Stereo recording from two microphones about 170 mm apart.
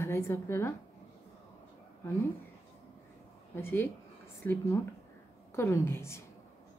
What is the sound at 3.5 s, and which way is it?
A woman's voice, 15° left (ahead or behind).